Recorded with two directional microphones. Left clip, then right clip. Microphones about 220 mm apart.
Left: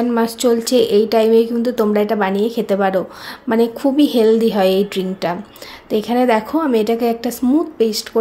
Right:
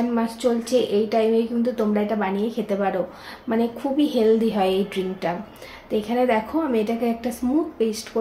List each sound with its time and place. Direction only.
0.1 s a woman's voice: 50° left (ahead or behind)